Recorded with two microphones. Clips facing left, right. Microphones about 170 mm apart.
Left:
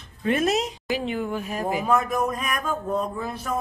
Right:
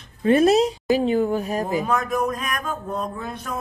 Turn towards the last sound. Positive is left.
turn(degrees=5)  # may be behind; listen again after turning